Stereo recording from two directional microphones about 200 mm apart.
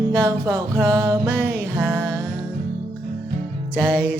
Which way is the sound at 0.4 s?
15° right (ahead or behind).